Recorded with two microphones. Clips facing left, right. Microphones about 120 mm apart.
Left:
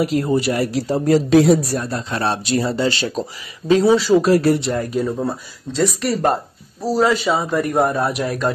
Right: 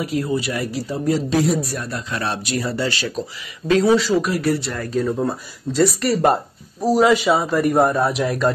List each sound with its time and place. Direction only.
0.2 s speech: 35° left (ahead or behind)
0.8 s speech: 50° left (ahead or behind)
1.7 s speech: 35° left (ahead or behind)
4.9 s a man's voice: 5° left (ahead or behind)
6.8 s a man's voice: 15° right (ahead or behind)